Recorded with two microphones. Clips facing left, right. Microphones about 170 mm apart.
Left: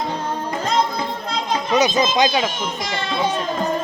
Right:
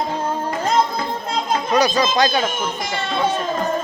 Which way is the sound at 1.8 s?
20° left (ahead or behind).